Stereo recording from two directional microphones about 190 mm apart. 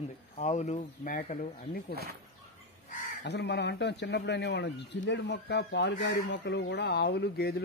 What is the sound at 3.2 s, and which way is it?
A man's voice, 65° left (ahead or behind).